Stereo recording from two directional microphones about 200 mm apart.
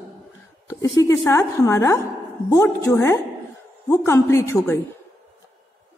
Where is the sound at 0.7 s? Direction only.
15° left (ahead or behind).